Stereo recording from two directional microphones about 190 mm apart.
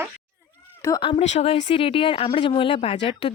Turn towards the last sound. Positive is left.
turn(degrees=30)  # may be behind; listen again after turning